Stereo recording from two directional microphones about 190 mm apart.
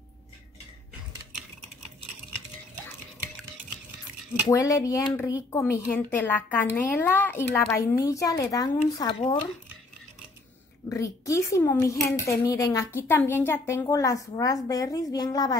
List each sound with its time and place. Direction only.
4.5 s speech: 15° left (ahead or behind)
10.9 s a woman's voice: 15° left (ahead or behind)